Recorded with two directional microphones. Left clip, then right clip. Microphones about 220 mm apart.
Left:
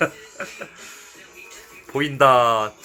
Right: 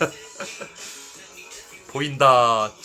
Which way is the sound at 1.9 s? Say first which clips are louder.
Left 1 dB; 10° left (ahead or behind).